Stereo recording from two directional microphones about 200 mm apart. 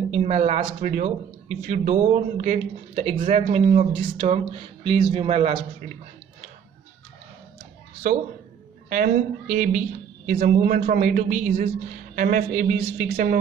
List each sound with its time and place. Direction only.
0.1 s speech: 30° right (ahead or behind)
8.8 s a woman's voice: 40° right (ahead or behind)